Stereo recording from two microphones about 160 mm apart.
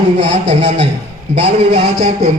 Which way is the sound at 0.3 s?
45° right (ahead or behind).